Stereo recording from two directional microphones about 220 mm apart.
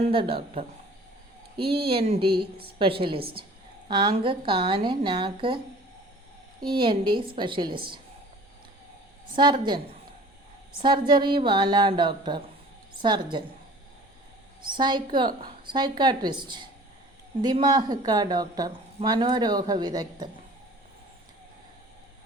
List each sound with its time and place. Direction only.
0.0 s a woman's voice: 25° right (ahead or behind)
1.8 s a woman's voice: 25° right (ahead or behind)
2.2 s a woman's voice: 45° right (ahead or behind)
2.7 s a woman's voice: 25° right (ahead or behind)
6.6 s a woman's voice: 20° right (ahead or behind)
9.3 s a woman's voice: 20° right (ahead or behind)
14.8 s a woman's voice: 20° right (ahead or behind)
15.3 s a woman's voice: 40° right (ahead or behind)
15.6 s a woman's voice: 20° right (ahead or behind)